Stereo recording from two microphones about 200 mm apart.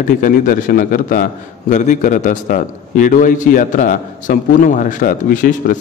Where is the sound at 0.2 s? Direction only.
45° left (ahead or behind).